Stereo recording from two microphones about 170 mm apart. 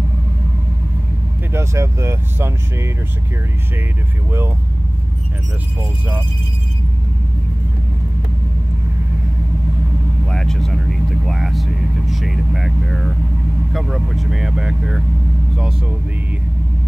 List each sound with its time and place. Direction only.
1.5 s speech: 15° right (ahead or behind)
10.2 s speech: 5° left (ahead or behind)